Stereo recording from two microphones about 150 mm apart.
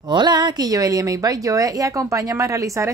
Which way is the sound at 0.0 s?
30° right (ahead or behind).